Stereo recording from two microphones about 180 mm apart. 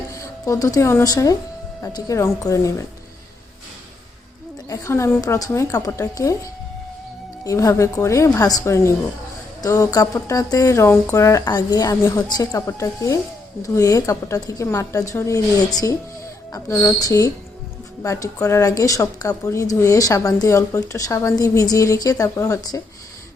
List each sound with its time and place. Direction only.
0.2 s a woman's voice: 20° left (ahead or behind)
4.7 s a woman's voice: 15° left (ahead or behind)
7.4 s a woman's voice: 20° left (ahead or behind)
16.5 s a woman's voice: 15° left (ahead or behind)